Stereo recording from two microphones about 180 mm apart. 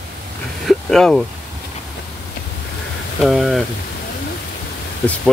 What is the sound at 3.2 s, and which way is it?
Speech, centre (ahead or behind).